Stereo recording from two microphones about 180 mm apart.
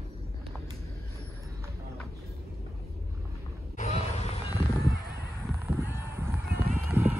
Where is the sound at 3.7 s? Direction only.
35° left (ahead or behind).